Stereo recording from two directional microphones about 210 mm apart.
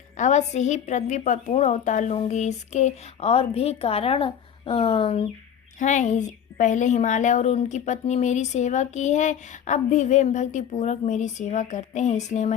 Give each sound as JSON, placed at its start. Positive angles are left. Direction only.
{"t": 0.2, "sound": "a woman's voice", "side_deg": 35}